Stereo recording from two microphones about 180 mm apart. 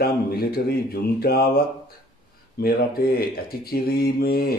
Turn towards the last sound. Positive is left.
turn(degrees=55)  # may be behind; listen again after turning